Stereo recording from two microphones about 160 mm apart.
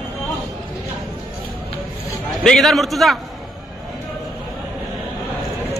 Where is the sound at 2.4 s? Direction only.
Centre (ahead or behind).